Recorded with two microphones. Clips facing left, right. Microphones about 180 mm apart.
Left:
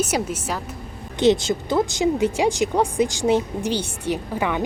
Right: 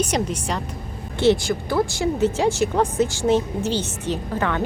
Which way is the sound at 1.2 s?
20° left (ahead or behind).